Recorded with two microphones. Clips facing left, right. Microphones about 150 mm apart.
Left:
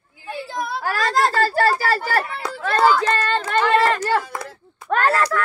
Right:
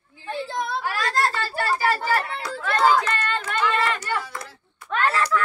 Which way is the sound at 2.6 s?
35° left (ahead or behind).